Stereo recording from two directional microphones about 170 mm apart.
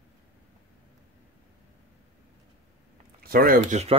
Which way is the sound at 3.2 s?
60° right (ahead or behind).